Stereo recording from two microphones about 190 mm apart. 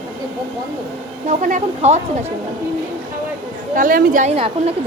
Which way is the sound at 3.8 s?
45° right (ahead or behind).